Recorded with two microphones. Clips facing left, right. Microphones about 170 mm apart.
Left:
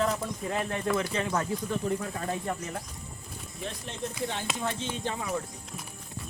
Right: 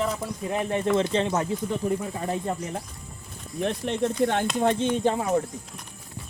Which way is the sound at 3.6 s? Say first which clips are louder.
Right 11 dB; 65° right (ahead or behind).